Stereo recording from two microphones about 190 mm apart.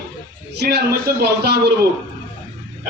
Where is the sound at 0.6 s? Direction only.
60° right (ahead or behind).